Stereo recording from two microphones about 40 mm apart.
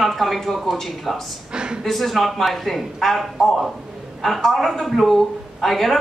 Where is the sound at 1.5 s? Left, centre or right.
Right.